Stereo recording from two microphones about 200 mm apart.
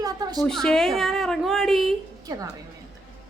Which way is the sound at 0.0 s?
20° right (ahead or behind).